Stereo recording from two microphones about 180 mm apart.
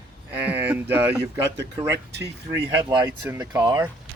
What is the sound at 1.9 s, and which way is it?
Speech, 65° right (ahead or behind).